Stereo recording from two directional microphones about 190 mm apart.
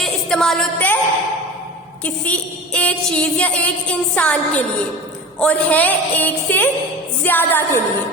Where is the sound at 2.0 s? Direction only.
5° left (ahead or behind).